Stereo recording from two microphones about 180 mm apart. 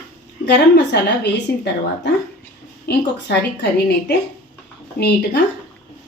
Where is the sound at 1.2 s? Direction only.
70° left (ahead or behind).